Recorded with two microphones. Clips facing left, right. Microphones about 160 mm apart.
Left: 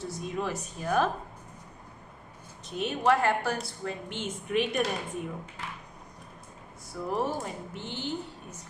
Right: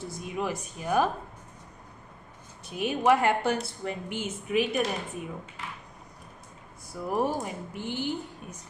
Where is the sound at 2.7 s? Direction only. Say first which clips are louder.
Right 2 dB; 10° right (ahead or behind).